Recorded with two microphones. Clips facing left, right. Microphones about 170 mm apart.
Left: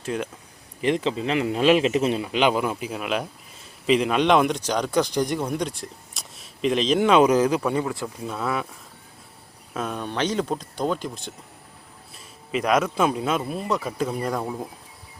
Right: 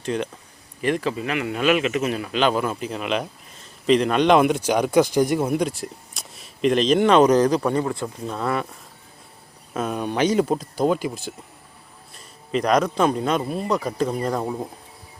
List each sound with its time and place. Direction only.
0.0 s speech: 5° left (ahead or behind)
0.8 s speech: 20° left (ahead or behind); by 8.6 s centre (ahead or behind)
9.7 s speech: centre (ahead or behind)
12.1 s speech: 5° left (ahead or behind)